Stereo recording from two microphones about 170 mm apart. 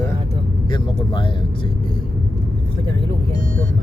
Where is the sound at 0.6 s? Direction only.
30° left (ahead or behind).